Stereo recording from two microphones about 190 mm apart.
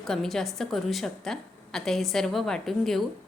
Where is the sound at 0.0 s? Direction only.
Centre (ahead or behind).